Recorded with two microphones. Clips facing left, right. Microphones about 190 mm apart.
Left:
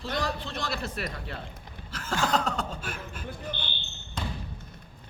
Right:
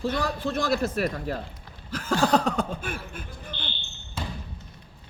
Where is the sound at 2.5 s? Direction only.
55° right (ahead or behind).